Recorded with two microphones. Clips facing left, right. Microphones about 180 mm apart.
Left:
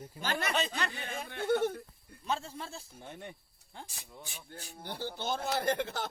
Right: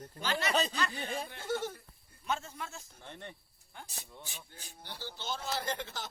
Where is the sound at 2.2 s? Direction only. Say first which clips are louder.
Left 1 dB; 30° left (ahead or behind).